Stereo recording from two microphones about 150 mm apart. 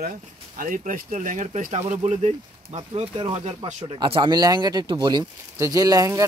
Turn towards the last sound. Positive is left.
turn(degrees=-25)  # may be behind; listen again after turning